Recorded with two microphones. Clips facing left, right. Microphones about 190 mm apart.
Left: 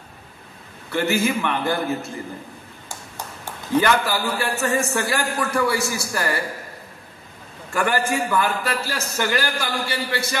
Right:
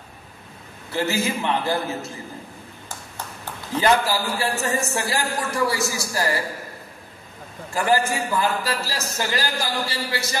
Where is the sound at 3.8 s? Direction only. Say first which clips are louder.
Even; 60° left (ahead or behind).